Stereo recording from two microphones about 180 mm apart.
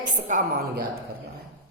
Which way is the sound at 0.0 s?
45° right (ahead or behind).